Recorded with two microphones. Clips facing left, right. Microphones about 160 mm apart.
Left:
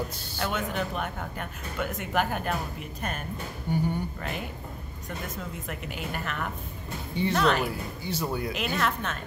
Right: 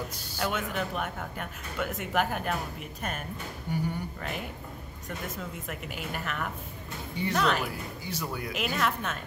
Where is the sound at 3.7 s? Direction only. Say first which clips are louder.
Left 4 dB; 30° left (ahead or behind).